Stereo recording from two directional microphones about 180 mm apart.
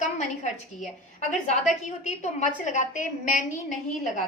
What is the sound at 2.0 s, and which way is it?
A woman's voice, 40° left (ahead or behind).